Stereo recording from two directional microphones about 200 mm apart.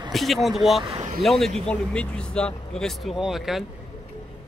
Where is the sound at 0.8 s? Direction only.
30° right (ahead or behind).